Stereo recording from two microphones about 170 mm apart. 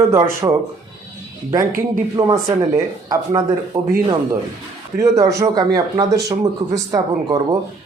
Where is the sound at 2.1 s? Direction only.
20° right (ahead or behind).